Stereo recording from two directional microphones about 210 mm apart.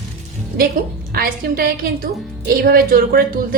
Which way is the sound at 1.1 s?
45° right (ahead or behind).